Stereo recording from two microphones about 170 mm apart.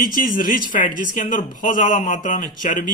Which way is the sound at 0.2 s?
55° left (ahead or behind).